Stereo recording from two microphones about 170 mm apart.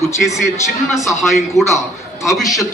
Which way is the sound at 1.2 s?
Centre (ahead or behind).